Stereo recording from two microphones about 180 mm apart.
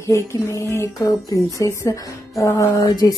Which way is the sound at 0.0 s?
15° left (ahead or behind).